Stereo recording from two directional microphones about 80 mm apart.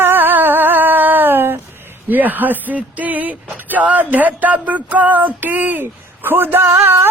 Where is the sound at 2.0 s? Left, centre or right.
Right.